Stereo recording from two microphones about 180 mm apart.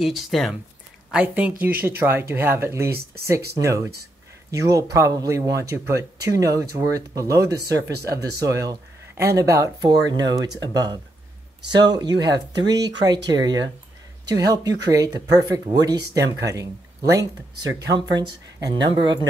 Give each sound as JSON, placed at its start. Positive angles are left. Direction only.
{"t": 0.0, "sound": "speech", "side_deg": 0}